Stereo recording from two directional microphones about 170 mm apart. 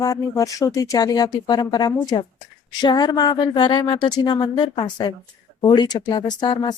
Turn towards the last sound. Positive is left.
turn(degrees=25)  # may be behind; listen again after turning